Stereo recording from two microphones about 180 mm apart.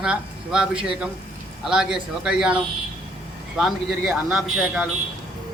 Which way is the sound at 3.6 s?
Centre (ahead or behind).